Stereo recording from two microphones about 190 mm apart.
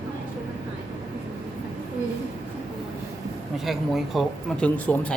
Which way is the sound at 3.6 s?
Centre (ahead or behind).